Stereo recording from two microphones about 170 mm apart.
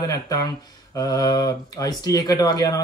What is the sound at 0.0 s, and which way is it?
Speech, 20° left (ahead or behind).